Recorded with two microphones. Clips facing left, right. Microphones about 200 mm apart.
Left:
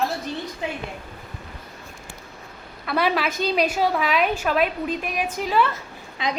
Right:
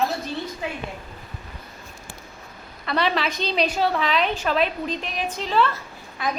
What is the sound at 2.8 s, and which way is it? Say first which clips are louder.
A woman's voice: left 1 dB; 5° left (ahead or behind).